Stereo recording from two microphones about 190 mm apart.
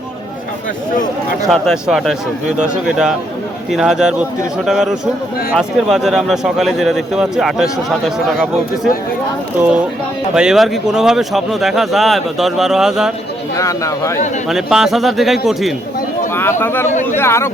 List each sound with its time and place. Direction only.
1.5 s speech: centre (ahead or behind)
13.6 s speech: 15° left (ahead or behind)
14.4 s speech: centre (ahead or behind)
16.3 s speech: 10° left (ahead or behind)
16.9 s speech: 40° left (ahead or behind)
17.2 s speech: 15° left (ahead or behind)